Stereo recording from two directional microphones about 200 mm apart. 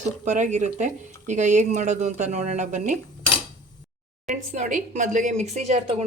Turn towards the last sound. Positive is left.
turn(degrees=-30)  # may be behind; listen again after turning